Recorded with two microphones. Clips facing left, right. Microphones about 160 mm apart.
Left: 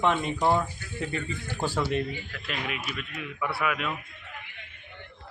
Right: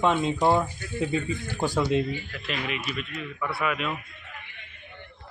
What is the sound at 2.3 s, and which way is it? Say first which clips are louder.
Speech: right 2 dB; centre (ahead or behind).